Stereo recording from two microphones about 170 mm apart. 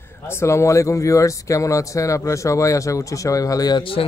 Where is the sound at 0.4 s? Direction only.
15° left (ahead or behind).